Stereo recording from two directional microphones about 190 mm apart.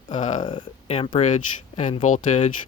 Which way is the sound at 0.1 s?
40° left (ahead or behind).